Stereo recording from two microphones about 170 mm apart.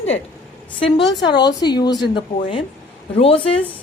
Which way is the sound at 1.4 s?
25° left (ahead or behind).